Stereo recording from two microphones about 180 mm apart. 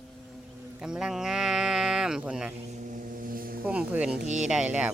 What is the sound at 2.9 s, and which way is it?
Vehicle, 50° right (ahead or behind).